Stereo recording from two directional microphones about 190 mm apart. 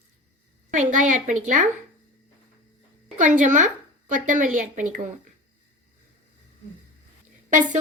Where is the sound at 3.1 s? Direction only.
40° right (ahead or behind).